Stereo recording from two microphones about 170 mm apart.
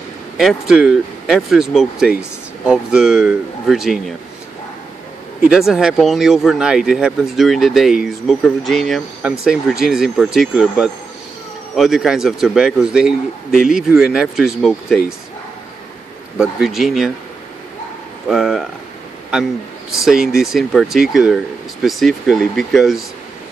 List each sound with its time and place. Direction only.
0.4 s speech: centre (ahead or behind)
5.5 s speech: 5° right (ahead or behind)
16.3 s speech: centre (ahead or behind)
18.3 s speech: centre (ahead or behind)
20.1 s speech: centre (ahead or behind)